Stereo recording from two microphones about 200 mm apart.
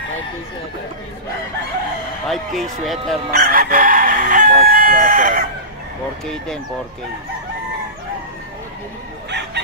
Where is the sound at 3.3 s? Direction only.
50° right (ahead or behind).